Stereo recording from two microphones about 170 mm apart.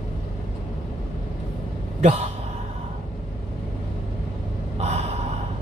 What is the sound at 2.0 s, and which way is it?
Speech, 40° right (ahead or behind).